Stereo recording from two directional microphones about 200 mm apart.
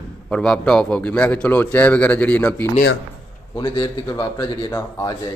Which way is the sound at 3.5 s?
20° left (ahead or behind).